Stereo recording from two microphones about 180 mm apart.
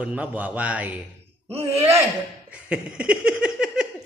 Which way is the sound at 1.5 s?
35° right (ahead or behind).